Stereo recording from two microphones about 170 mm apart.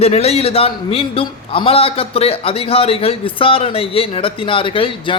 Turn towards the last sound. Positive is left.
turn(degrees=30)  # may be behind; listen again after turning